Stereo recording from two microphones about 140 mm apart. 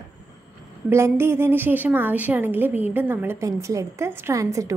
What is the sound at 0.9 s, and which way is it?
A woman's voice, 20° right (ahead or behind).